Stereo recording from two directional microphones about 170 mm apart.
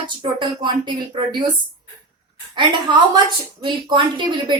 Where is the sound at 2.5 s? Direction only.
25° right (ahead or behind).